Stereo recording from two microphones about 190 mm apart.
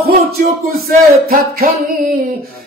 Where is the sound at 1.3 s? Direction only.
50° right (ahead or behind).